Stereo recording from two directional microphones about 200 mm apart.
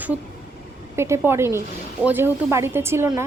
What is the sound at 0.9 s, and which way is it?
Speech, 15° right (ahead or behind).